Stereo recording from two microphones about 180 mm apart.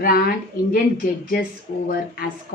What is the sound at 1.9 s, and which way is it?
Speech, 55° left (ahead or behind).